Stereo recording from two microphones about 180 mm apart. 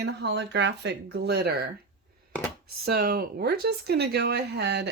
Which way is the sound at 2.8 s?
60° right (ahead or behind).